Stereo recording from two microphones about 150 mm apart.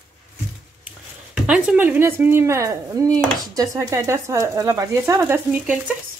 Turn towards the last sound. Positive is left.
turn(degrees=-10)  # may be behind; listen again after turning